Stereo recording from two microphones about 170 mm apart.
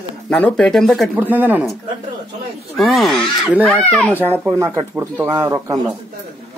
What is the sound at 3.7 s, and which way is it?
Speech, 10° left (ahead or behind).